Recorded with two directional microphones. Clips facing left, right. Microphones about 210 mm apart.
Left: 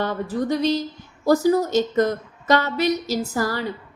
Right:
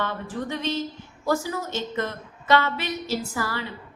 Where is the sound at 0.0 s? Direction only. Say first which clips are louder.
Left 6 dB; 40° left (ahead or behind).